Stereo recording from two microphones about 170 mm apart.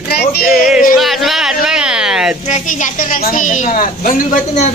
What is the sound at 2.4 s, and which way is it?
A woman's voice, 45° left (ahead or behind).